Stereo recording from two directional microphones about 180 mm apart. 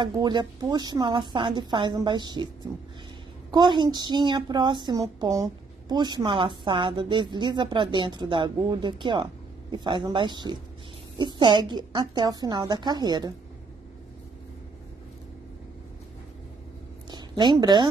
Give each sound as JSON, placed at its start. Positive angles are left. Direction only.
{"t": 0.0, "sound": "a woman's voice", "side_deg": -25}
{"t": 3.5, "sound": "a woman's voice", "side_deg": -25}
{"t": 17.1, "sound": "a woman's voice", "side_deg": -25}